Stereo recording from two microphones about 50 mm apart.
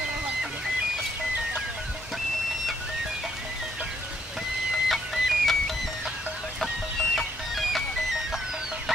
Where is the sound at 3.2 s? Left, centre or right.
Centre.